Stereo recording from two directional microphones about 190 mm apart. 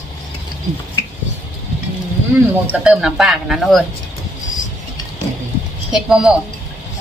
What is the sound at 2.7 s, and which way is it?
Speech, 5° right (ahead or behind).